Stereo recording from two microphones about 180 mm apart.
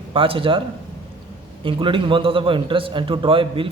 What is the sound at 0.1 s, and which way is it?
Speech, 30° right (ahead or behind).